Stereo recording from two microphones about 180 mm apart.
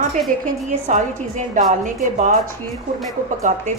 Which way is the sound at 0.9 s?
45° right (ahead or behind).